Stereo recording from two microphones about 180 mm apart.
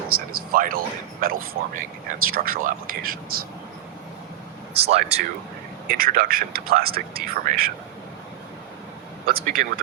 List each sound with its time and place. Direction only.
0.1 s a sound: 55° right (ahead or behind)
1.2 s speech: 55° right (ahead or behind)
4.7 s speech: 35° right (ahead or behind)
5.9 s speech: 55° right (ahead or behind)
9.2 s speech: 55° right (ahead or behind)